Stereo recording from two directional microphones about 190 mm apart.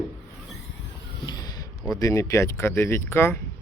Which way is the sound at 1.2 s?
20° left (ahead or behind).